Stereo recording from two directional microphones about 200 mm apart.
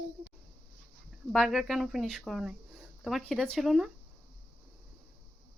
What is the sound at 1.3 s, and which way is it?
Speech, centre (ahead or behind).